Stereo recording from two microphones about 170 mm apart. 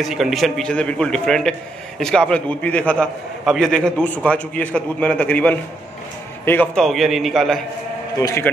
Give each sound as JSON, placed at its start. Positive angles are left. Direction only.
{"t": 0.0, "sound": "a man's voice", "side_deg": 0}
{"t": 8.2, "sound": "a man's voice", "side_deg": 15}